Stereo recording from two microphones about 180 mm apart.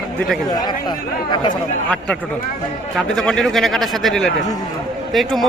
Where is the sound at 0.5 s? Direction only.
25° left (ahead or behind).